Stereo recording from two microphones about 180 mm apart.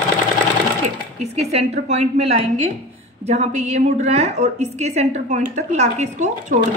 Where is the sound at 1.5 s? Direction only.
35° right (ahead or behind).